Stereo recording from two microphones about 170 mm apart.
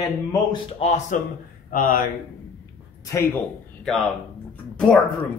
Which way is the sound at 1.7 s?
55° left (ahead or behind).